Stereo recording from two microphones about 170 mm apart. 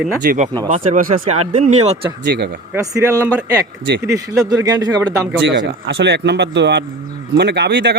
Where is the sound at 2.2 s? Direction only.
80° right.